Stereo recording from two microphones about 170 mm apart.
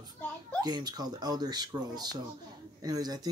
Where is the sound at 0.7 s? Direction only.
25° right (ahead or behind).